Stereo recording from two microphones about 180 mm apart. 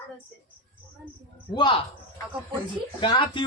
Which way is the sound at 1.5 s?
25° left (ahead or behind).